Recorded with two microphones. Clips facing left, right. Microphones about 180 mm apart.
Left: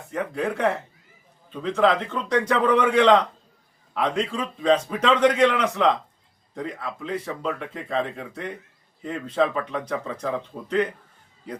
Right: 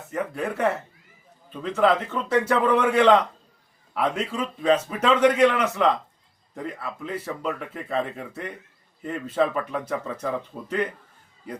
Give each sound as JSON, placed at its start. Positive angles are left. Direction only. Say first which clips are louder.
{"t": 0.1, "sound": "speech", "louder": "left 2 dB", "side_deg": -5}